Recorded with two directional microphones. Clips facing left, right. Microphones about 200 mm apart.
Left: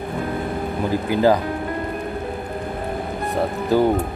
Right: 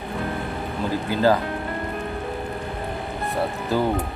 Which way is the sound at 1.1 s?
15° left (ahead or behind).